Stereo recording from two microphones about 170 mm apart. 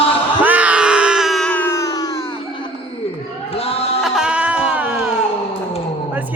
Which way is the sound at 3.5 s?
35° left (ahead or behind).